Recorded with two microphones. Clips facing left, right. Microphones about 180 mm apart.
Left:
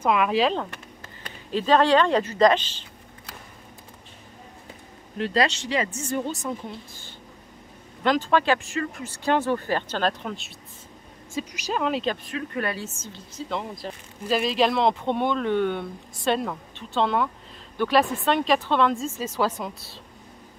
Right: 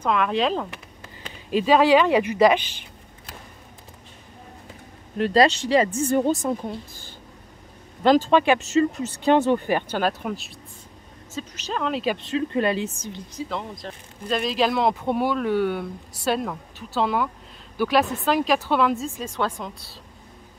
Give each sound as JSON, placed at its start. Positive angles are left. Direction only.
{"t": 0.0, "sound": "speech", "side_deg": 10}
{"t": 1.0, "sound": "speech", "side_deg": -15}
{"t": 5.3, "sound": "speech", "side_deg": -35}
{"t": 5.9, "sound": "speech", "side_deg": -55}
{"t": 8.0, "sound": "speech", "side_deg": -35}
{"t": 8.3, "sound": "speech", "side_deg": -20}
{"t": 11.3, "sound": "a woman's voice", "side_deg": 10}
{"t": 12.2, "sound": "speech", "side_deg": -25}
{"t": 13.5, "sound": "speech", "side_deg": 0}